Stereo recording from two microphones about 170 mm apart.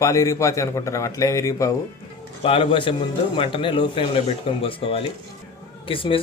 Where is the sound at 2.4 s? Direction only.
30° left (ahead or behind).